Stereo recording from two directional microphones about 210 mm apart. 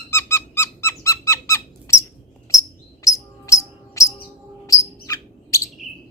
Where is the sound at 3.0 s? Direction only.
15° left (ahead or behind).